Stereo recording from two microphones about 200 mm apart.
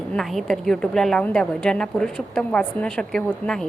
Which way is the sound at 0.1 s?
Centre (ahead or behind).